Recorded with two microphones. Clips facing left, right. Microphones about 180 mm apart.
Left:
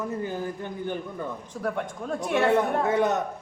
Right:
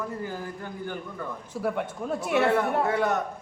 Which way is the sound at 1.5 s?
5° right (ahead or behind).